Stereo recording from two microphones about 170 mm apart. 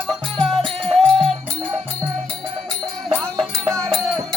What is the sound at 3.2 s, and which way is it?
Music, 5° left (ahead or behind).